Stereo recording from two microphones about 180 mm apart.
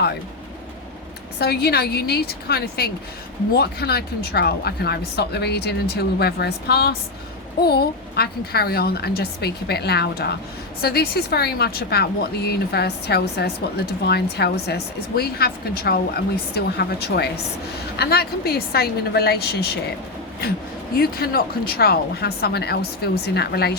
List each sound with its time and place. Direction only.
1.4 s speech: 65° left (ahead or behind)
21.0 s speech: 60° left (ahead or behind)